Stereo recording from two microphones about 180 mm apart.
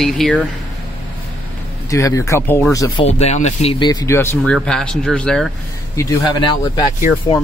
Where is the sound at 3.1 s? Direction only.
35° left (ahead or behind).